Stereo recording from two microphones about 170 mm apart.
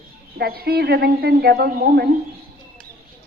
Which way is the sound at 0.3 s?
65° right (ahead or behind).